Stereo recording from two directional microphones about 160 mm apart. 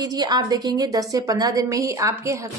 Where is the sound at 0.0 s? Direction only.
25° right (ahead or behind).